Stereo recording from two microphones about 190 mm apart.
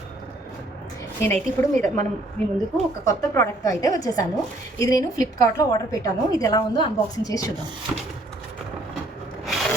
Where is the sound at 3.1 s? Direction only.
15° left (ahead or behind).